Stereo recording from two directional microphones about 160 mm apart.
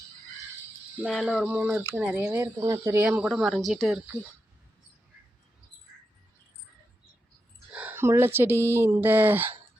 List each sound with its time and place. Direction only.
1.0 s speech: centre (ahead or behind); by 3.1 s 15° right (ahead or behind)
3.1 s speech: 5° right (ahead or behind)
7.7 s speech: 10° right (ahead or behind)